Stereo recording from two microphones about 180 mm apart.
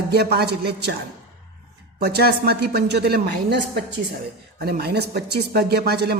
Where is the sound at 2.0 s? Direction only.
65° right (ahead or behind).